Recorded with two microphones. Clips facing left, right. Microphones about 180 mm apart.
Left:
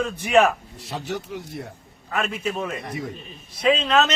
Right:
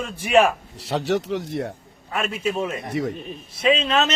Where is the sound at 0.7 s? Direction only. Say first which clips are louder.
Right 7 dB; 75° right (ahead or behind).